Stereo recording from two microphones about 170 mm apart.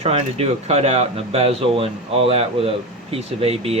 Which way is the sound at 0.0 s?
40° right (ahead or behind).